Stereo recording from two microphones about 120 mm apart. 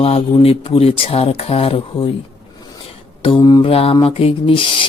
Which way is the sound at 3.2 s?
40° left (ahead or behind).